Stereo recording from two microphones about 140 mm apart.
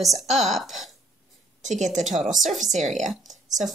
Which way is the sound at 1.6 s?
60° right (ahead or behind).